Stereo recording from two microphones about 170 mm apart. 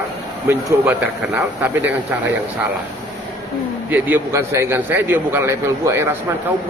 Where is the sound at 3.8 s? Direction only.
10° right (ahead or behind).